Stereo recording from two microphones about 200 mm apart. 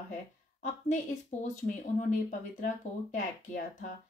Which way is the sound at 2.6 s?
40° left (ahead or behind).